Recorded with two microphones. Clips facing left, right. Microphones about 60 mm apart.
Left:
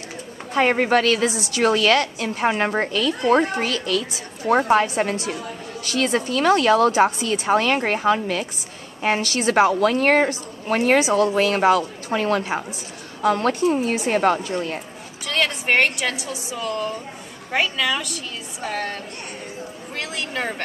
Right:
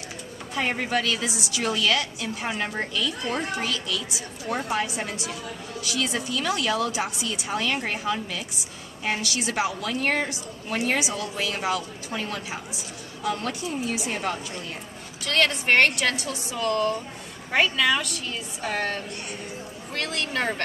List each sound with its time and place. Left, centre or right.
0.6 s a woman's voice: left
4.8 s a woman's voice: left
15.2 s a woman's voice: centre
20.0 s a woman's voice: centre